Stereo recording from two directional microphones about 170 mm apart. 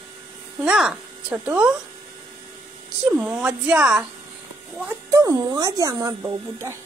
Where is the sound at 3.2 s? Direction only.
10° right (ahead or behind).